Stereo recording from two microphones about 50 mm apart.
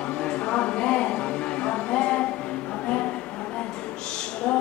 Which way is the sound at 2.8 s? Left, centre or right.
Left.